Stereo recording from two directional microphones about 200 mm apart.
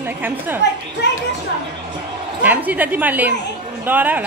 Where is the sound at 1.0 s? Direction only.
60° left (ahead or behind).